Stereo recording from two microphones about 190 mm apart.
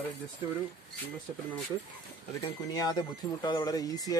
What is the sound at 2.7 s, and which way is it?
Speech, 20° left (ahead or behind).